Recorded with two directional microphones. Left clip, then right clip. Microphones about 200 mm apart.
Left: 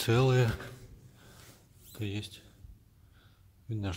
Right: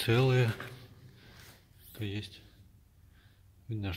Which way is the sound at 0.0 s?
5° left (ahead or behind).